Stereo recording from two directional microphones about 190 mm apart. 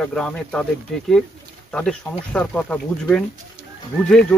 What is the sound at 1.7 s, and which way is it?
Speech, 5° left (ahead or behind).